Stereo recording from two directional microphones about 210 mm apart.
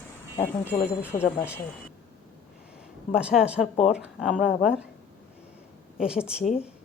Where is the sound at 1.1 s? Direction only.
35° left (ahead or behind).